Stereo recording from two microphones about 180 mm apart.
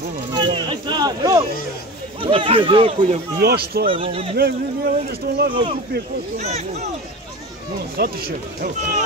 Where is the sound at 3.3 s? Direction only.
60° right (ahead or behind).